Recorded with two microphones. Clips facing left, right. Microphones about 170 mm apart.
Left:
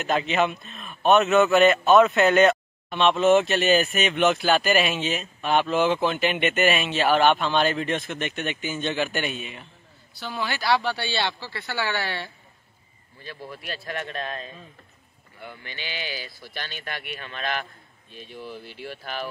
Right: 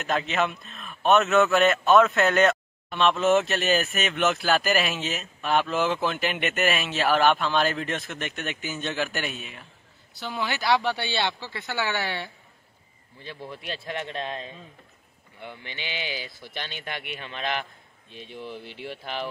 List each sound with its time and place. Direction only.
0.0 s speech: centre (ahead or behind)
10.1 s speech: 20° right (ahead or behind)